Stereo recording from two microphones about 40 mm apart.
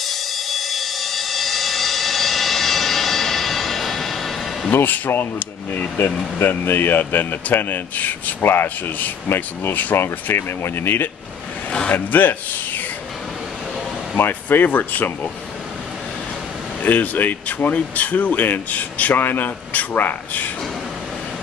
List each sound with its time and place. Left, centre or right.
0.0 s a sound: centre
4.8 s speech: left
6.4 s speech: left
8.4 s speech: left
10.3 s speech: left
11.9 s speech: left
14.1 s speech: left
14.7 s speech: left
16.8 s speech: left
19.1 s speech: left